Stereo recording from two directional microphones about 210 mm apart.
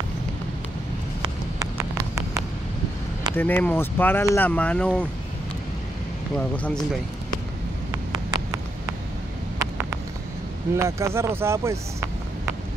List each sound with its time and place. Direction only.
1.2 s clip-clop: 15° right (ahead or behind)
3.3 s speech: 10° left (ahead or behind)
6.3 s speech: 5° left (ahead or behind)
7.9 s a sound: 20° right (ahead or behind)
10.8 s speech: 15° right (ahead or behind)